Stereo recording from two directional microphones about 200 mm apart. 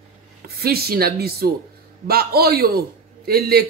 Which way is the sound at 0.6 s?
50° right (ahead or behind).